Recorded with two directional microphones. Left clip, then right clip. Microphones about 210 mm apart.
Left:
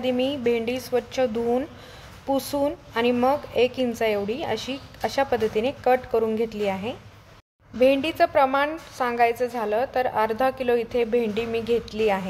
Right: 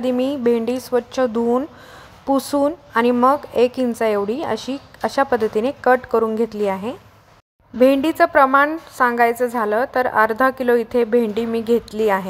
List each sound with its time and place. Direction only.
0.0 s a woman's voice: 20° right (ahead or behind)